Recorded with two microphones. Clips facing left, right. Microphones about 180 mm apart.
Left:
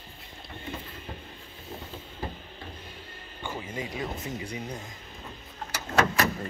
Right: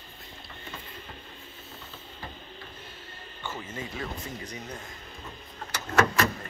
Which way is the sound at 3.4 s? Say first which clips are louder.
Left 2 dB; 15° left (ahead or behind).